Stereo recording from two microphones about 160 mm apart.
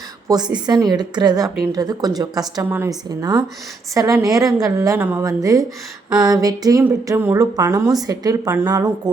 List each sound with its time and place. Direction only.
0.3 s speech: 25° right (ahead or behind)